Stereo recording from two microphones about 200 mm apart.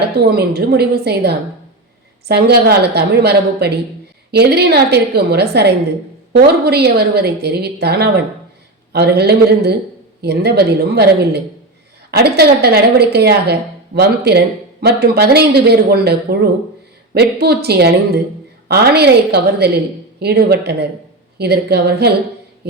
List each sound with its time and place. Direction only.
0.2 s a woman's voice: 50° right (ahead or behind)
12.4 s a woman's voice: 50° right (ahead or behind)